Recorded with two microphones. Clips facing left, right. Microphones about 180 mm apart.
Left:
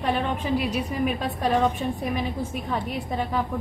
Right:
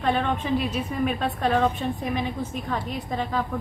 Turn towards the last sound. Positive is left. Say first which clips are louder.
# left 1 dB
turn(degrees=10)  # may be behind; listen again after turning